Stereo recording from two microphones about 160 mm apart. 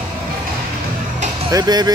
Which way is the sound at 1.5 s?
25° right (ahead or behind).